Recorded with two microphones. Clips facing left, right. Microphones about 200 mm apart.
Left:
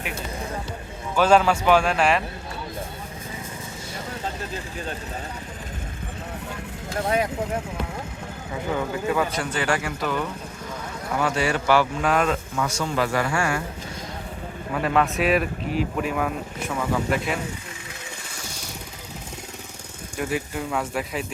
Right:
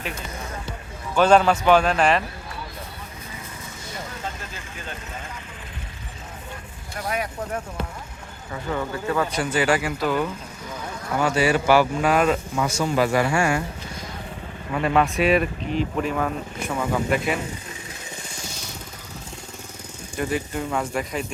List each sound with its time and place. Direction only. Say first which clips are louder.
1.1 s speech: right 1 dB; 5° left (ahead or behind)
4.2 s vehicle: left 4 dB; 35° left (ahead or behind)
7.0 s speech: left 4 dB; 25° left (ahead or behind)
9.4 s speech: right 4 dB; 10° right (ahead or behind)
14.7 s speech: right 1 dB; centre (ahead or behind)
20.1 s speech: right 1 dB; 5° left (ahead or behind)